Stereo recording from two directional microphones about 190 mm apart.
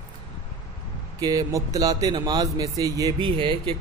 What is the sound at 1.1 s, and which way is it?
A man's voice, 20° right (ahead or behind).